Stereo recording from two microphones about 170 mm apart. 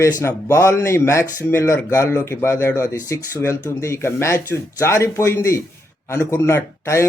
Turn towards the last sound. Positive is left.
turn(degrees=15)  # may be behind; listen again after turning